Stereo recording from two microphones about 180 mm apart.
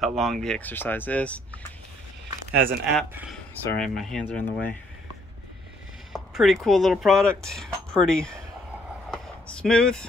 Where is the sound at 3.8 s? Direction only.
5° left (ahead or behind).